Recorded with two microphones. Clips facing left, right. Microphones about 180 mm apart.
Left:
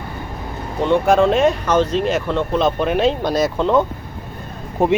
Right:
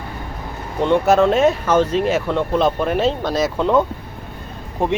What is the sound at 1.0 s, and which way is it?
Speech, 5° right (ahead or behind).